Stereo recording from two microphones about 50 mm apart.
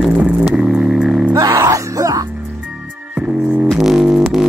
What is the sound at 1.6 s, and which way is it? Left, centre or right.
Music, right.